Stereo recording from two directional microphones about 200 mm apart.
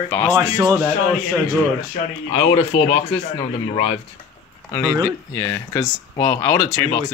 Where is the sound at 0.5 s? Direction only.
15° right (ahead or behind).